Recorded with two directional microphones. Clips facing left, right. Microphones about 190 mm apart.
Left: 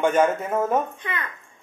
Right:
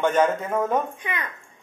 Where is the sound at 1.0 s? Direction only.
15° right (ahead or behind).